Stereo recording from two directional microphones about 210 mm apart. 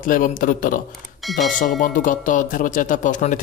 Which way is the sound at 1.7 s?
40° left (ahead or behind).